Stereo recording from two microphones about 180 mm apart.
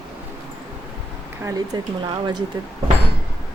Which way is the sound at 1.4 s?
20° right (ahead or behind).